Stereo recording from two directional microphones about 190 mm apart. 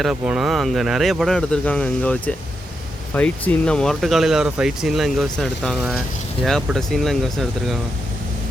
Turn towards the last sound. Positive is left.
turn(degrees=0)  # may be behind; listen again after turning